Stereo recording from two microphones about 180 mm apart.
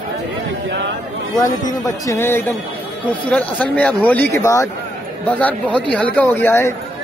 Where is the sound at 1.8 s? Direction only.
20° left (ahead or behind).